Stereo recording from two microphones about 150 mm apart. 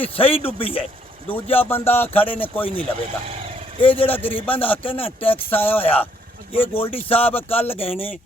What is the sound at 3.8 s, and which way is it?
Speech, 35° left (ahead or behind).